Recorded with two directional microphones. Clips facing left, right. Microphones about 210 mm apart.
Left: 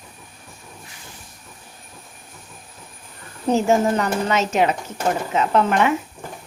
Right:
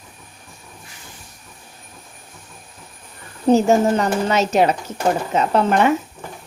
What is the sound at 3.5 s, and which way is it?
Speech, 35° right (ahead or behind).